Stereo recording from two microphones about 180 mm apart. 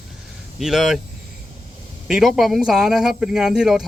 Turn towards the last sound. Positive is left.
turn(degrees=-5)  # may be behind; listen again after turning